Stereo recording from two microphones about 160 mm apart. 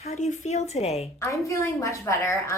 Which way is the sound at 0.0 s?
45° left (ahead or behind).